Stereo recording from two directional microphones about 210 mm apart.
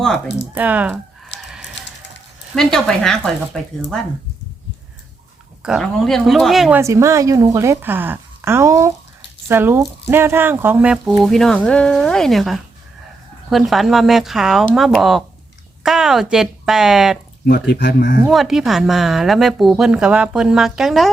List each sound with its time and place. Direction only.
0.5 s a woman's voice: 5° right (ahead or behind)
1.5 s chicken: centre (ahead or behind)
2.6 s speech: centre (ahead or behind)
5.6 s a woman's voice: centre (ahead or behind)
17.4 s speech: 45° left (ahead or behind)
18.3 s speech: centre (ahead or behind)